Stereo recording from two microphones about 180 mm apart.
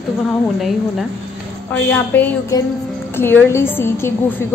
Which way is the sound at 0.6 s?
Centre (ahead or behind).